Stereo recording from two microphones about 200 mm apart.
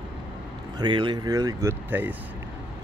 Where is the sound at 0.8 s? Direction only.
20° right (ahead or behind).